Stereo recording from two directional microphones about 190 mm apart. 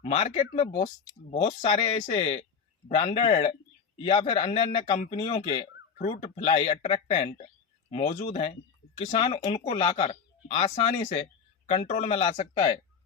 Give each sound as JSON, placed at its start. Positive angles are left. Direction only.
{"t": 0.0, "sound": "speech", "side_deg": 35}